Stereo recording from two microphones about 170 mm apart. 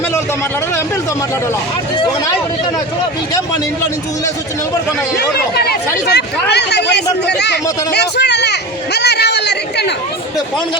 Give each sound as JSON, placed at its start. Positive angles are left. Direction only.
{"t": 6.1, "sound": "speech", "side_deg": 80}